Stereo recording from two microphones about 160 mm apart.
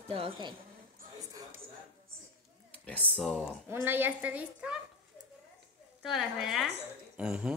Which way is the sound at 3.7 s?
15° right (ahead or behind).